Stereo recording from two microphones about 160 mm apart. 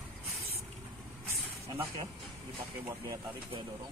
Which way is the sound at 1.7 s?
35° right (ahead or behind).